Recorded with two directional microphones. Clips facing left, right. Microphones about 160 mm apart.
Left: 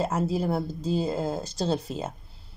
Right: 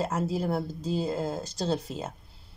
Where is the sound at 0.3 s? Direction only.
5° left (ahead or behind).